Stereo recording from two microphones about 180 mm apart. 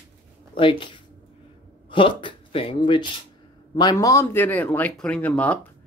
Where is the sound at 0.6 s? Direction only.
30° left (ahead or behind).